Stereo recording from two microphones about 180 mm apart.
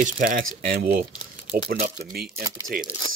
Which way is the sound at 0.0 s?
50° right (ahead or behind).